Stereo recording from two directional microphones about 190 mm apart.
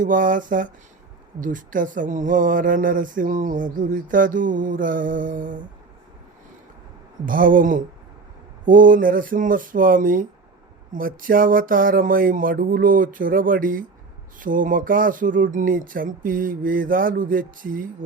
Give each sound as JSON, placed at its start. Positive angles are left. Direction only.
{"t": 0.0, "sound": "speech", "side_deg": -45}
{"t": 7.3, "sound": "speech", "side_deg": -45}